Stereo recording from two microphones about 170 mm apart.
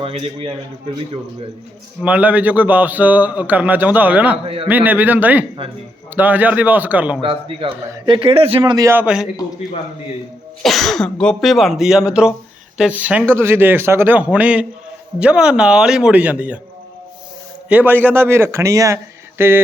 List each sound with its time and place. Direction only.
0.0 s a man's voice: 35° right (ahead or behind)
2.0 s a man's voice: 10° right (ahead or behind)
4.4 s a man's voice: 35° right (ahead or behind)
4.7 s a man's voice: 10° right (ahead or behind)
7.2 s a man's voice: 30° right (ahead or behind); by 9.3 s 5° right (ahead or behind)
10.6 s a man's voice: centre (ahead or behind)
17.7 s a man's voice: 10° right (ahead or behind)